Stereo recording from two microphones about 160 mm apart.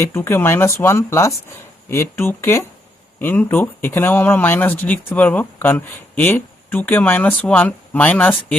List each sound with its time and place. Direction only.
0.0 s speech: 15° left (ahead or behind)